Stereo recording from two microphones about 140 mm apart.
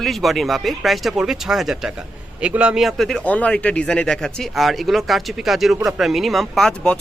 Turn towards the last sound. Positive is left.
turn(degrees=5)  # may be behind; listen again after turning